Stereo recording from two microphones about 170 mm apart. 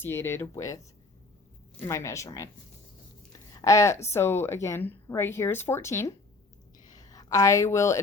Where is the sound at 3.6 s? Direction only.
20° left (ahead or behind).